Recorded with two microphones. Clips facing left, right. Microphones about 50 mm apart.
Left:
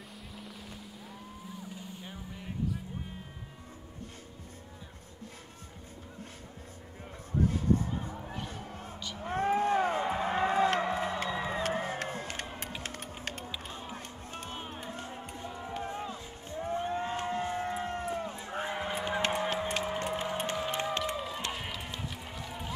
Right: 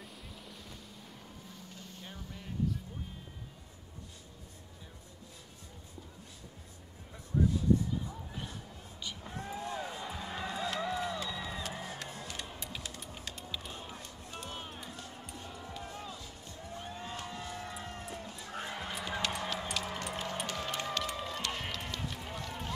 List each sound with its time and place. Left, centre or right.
0.4 s boat: centre
1.7 s vehicle: centre
7.4 s music: left
14.5 s music: left
14.8 s music: left
19.8 s a sound: left
20.5 s music: centre
21.5 s run: centre
22.0 s music: centre